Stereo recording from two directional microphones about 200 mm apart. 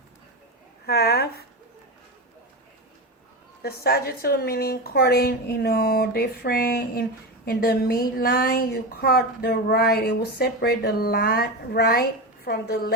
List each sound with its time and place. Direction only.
0.9 s speech: 50° left (ahead or behind)
3.6 s speech: 50° left (ahead or behind)